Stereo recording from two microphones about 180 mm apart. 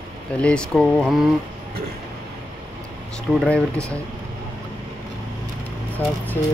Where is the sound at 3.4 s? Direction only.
5° left (ahead or behind).